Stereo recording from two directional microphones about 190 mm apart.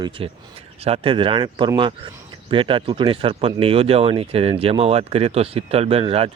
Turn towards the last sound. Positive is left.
turn(degrees=-30)  # may be behind; listen again after turning